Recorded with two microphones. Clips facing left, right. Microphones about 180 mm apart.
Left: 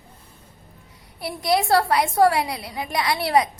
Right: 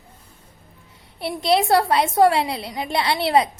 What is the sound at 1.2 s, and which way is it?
A woman's voice, 25° right (ahead or behind).